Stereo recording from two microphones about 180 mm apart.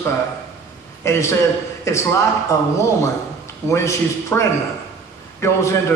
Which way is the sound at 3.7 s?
15° left (ahead or behind).